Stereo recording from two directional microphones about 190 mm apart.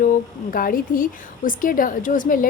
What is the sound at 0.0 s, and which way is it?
A woman's voice, 45° left (ahead or behind).